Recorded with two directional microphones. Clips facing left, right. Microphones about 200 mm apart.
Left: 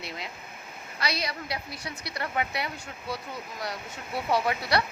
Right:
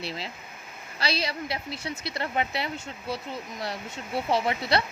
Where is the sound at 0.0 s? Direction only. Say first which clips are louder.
Right 3 dB; 30° right (ahead or behind).